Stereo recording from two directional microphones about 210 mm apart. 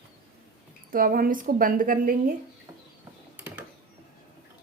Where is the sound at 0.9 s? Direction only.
45° right (ahead or behind).